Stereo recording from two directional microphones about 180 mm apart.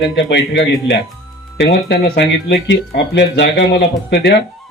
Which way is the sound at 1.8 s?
65° left (ahead or behind).